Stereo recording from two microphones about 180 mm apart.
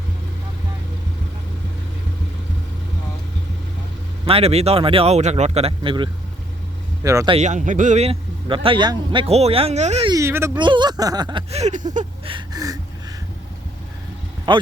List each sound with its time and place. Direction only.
4.3 s speech: 35° right (ahead or behind)
7.0 s speech: 15° right (ahead or behind)
7.3 s speech: 40° right (ahead or behind)
10.1 s speech: 15° right (ahead or behind)
10.6 s speech: 25° right (ahead or behind)
11.5 s a sound: 40° right (ahead or behind)
12.2 s a sound: 25° right (ahead or behind)
14.5 s speech: 25° right (ahead or behind)